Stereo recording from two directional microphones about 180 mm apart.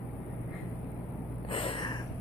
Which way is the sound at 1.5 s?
30° left (ahead or behind).